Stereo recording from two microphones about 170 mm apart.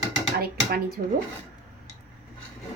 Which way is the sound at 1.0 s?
45° right (ahead or behind).